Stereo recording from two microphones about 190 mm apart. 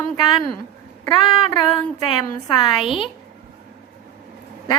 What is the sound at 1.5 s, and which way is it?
A woman's voice, 20° left (ahead or behind).